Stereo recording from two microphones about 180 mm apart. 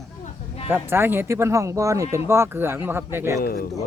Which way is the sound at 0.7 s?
10° right (ahead or behind).